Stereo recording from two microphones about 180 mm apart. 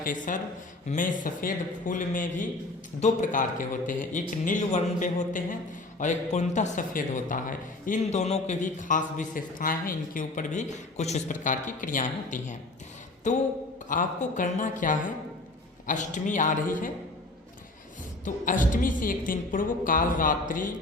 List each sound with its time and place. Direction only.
0.0 s a man's voice: 50° left (ahead or behind)
18.4 s a man's voice: 45° left (ahead or behind)